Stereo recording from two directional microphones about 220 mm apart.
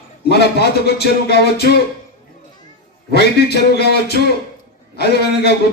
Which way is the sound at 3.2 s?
45° left (ahead or behind).